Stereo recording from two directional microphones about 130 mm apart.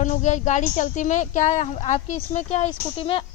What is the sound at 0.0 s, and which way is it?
Speech, 70° left (ahead or behind).